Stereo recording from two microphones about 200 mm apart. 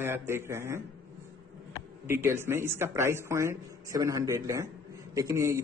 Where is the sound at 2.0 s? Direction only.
10° right (ahead or behind).